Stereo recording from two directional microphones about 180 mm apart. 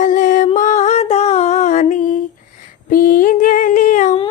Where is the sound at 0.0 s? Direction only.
45° left (ahead or behind).